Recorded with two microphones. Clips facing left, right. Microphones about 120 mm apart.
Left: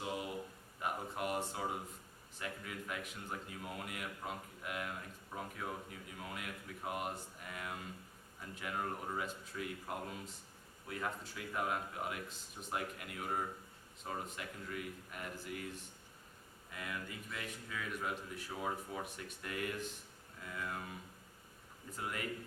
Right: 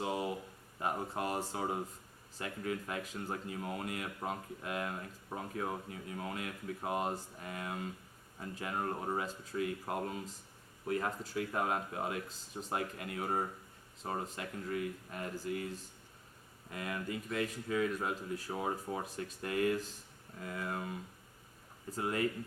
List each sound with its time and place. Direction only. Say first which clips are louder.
0.0 s a sound: right 5 dB; 30° right (ahead or behind)
0.8 s a man's voice: right 4 dB; 30° right (ahead or behind)
21.8 s a man's voice: right 7 dB; 35° right (ahead or behind)